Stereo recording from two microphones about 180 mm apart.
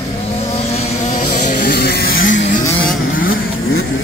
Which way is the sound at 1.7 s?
65° left (ahead or behind).